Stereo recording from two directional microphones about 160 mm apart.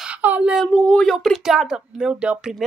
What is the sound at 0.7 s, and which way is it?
Speech, 5° left (ahead or behind).